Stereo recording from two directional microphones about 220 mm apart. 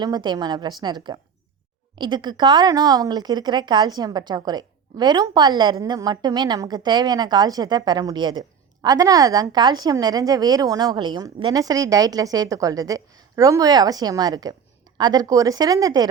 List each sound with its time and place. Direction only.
0.0 s a woman's voice: 20° right (ahead or behind)